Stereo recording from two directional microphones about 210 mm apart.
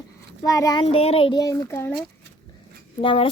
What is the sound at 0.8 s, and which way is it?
A child's voice, 30° left (ahead or behind).